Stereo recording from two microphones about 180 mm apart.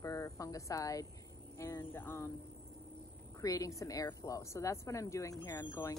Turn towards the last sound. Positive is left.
turn(degrees=15)  # may be behind; listen again after turning